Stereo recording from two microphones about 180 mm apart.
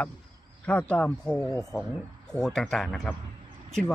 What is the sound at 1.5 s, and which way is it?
Speech, 20° left (ahead or behind).